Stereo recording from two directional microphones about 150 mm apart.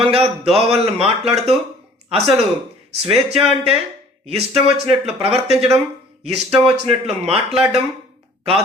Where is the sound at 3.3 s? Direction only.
40° right (ahead or behind).